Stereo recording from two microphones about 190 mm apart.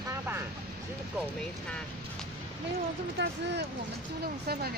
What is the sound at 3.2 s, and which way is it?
Speech, 65° right (ahead or behind).